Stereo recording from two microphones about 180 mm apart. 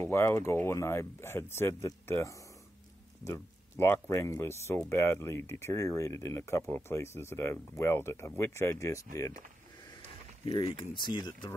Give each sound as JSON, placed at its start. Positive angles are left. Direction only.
{"t": 0.0, "sound": "speech", "side_deg": 15}
{"t": 10.7, "sound": "speech", "side_deg": 25}